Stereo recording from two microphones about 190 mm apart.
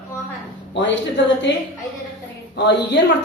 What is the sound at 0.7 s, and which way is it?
Speech, 70° left (ahead or behind).